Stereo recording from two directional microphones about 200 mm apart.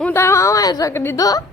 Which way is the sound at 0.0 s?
10° left (ahead or behind).